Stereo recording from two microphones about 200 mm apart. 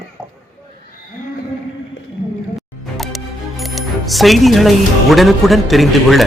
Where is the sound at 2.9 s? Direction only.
Centre (ahead or behind).